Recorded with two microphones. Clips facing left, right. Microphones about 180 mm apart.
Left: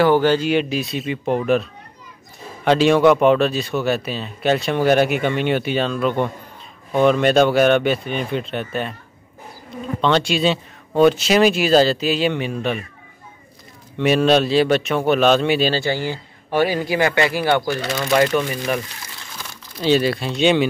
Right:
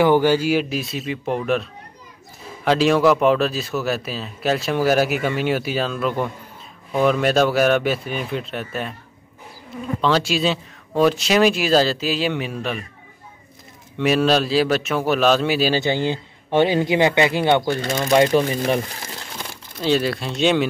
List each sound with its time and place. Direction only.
0.0 s speech: 15° right (ahead or behind)
10.0 s speech: 5° right (ahead or behind)
14.0 s speech: centre (ahead or behind)
15.7 s speech: 20° right (ahead or behind)
19.8 s speech: centre (ahead or behind)